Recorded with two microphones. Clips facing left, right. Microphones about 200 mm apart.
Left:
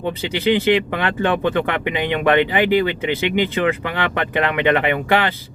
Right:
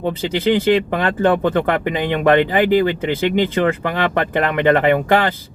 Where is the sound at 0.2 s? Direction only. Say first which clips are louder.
Right 1 dB; 40° right (ahead or behind).